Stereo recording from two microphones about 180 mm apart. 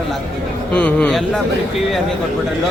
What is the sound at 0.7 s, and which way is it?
A man's voice, 10° left (ahead or behind).